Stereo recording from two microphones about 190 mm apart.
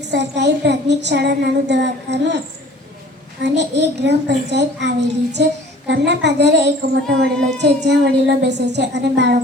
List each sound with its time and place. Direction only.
0.1 s child singing: 65° right (ahead or behind)
3.4 s child singing: 65° right (ahead or behind)